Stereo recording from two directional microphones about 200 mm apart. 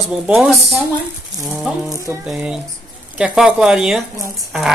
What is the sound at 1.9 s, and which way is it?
Music, 15° right (ahead or behind).